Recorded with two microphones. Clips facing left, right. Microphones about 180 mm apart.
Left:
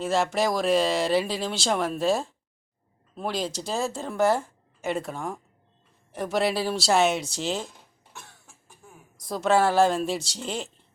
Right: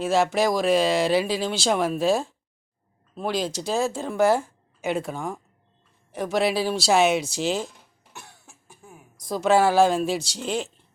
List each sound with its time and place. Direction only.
0.0 s speech: 5° right (ahead or behind)
9.3 s speech: 5° right (ahead or behind)